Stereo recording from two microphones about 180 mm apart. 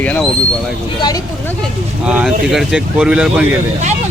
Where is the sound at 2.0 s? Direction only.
5° right (ahead or behind).